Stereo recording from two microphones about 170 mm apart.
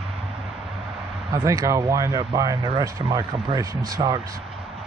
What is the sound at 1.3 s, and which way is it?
A man's voice, 20° right (ahead or behind).